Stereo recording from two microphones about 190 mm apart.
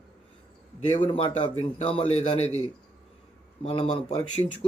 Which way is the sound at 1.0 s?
30° left (ahead or behind).